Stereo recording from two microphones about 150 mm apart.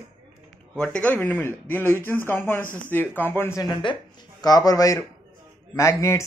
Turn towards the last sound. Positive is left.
turn(degrees=20)  # may be behind; listen again after turning